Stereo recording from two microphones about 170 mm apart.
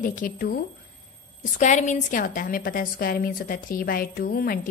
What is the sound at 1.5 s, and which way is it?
A woman's voice, 45° left (ahead or behind).